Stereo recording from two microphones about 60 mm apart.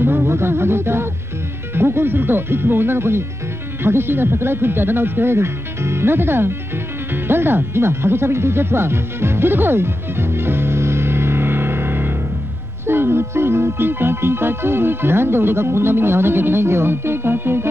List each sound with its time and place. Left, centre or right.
0.0 s music: right
1.8 s speech: right
7.2 s music: right
12.8 s speech: right